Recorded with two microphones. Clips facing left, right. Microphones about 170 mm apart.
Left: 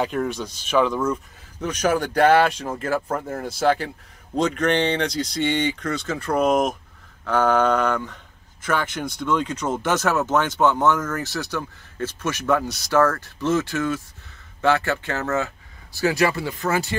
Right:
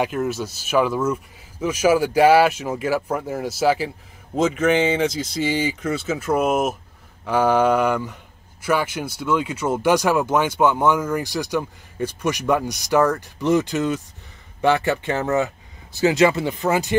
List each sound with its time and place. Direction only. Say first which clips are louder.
0.0 s speech: right 1 dB; 5° right (ahead or behind)